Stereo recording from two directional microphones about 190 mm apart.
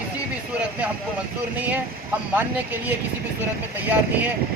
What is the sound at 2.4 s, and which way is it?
Speech, 10° right (ahead or behind).